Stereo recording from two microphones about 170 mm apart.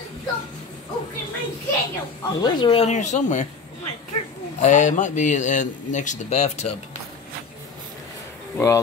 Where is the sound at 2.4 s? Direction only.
25° left (ahead or behind).